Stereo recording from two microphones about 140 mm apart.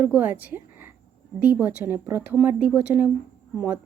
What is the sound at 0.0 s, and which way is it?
Speech, 10° right (ahead or behind).